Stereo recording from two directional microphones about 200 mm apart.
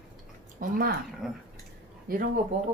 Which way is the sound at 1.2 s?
Centre (ahead or behind).